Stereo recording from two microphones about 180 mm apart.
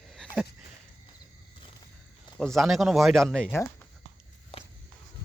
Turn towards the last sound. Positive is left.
turn(degrees=5)  # may be behind; listen again after turning